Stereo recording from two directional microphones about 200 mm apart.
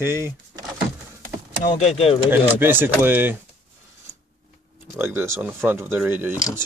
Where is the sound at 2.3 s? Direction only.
10° right (ahead or behind).